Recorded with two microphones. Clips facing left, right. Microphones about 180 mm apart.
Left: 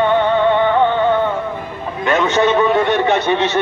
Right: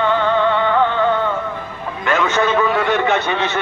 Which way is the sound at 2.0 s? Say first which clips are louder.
Left 3 dB; 20° left (ahead or behind).